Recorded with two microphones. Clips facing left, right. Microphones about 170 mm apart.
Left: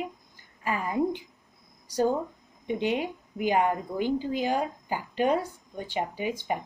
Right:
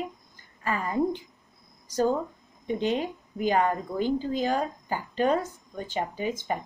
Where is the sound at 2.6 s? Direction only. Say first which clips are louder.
Right 1 dB; 15° left (ahead or behind).